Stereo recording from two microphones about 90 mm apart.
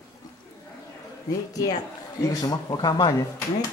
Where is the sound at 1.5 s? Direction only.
45° left (ahead or behind).